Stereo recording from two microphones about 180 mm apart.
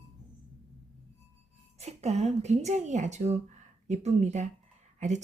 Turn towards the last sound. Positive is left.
turn(degrees=-40)  # may be behind; listen again after turning